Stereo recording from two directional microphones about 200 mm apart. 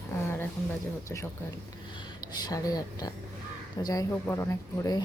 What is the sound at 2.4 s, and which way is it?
Speech, 20° left (ahead or behind).